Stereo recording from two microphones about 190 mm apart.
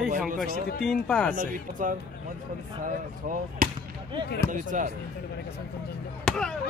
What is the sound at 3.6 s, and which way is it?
Speech, 50° right (ahead or behind).